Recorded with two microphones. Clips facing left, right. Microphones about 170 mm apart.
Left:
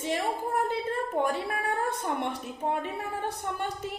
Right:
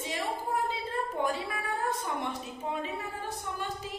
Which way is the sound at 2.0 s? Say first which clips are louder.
Left 3 dB; 60° left (ahead or behind).